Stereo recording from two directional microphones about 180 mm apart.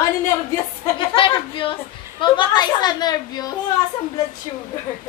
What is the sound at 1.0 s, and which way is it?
A woman's voice, 30° left (ahead or behind).